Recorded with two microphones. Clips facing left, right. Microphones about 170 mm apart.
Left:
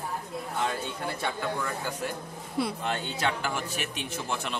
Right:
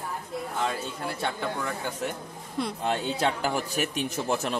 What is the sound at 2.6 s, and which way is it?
Speech, 5° left (ahead or behind).